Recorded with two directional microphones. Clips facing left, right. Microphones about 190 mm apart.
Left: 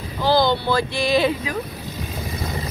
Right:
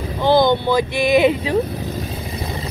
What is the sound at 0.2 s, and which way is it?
Speech, 20° right (ahead or behind).